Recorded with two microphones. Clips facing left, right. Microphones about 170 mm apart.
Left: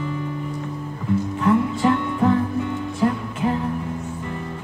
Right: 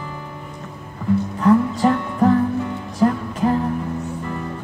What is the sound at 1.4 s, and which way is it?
Music, 40° right (ahead or behind).